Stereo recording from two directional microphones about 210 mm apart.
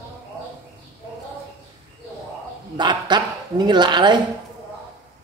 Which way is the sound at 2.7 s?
20° right (ahead or behind).